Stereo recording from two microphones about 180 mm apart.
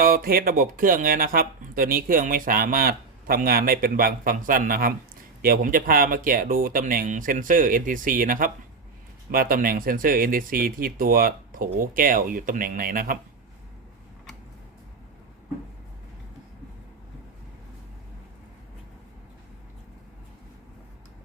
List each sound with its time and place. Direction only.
0.0 s speech: 55° right (ahead or behind)